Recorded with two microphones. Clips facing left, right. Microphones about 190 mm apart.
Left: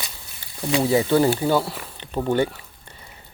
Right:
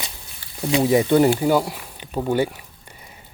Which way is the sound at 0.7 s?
20° right (ahead or behind).